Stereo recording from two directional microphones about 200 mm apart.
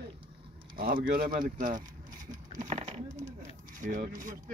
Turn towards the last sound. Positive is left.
turn(degrees=-45)  # may be behind; listen again after turning